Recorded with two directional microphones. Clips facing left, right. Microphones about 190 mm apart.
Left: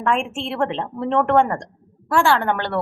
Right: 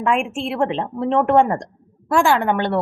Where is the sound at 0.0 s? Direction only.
10° right (ahead or behind).